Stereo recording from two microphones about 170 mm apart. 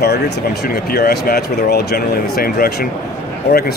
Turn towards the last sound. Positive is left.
turn(degrees=65)  # may be behind; listen again after turning